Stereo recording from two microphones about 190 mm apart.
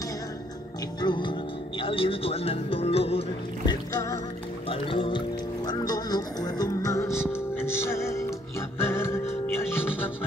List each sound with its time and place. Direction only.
1.0 s music: 25° left (ahead or behind)
1.8 s speech: 30° left (ahead or behind)
3.9 s music: 15° left (ahead or behind)
4.6 s speech: 25° left (ahead or behind)
7.3 s music: 15° left (ahead or behind)